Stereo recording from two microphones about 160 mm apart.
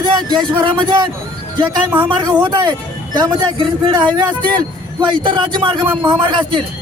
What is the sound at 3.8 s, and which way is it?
A man's voice, 25° right (ahead or behind).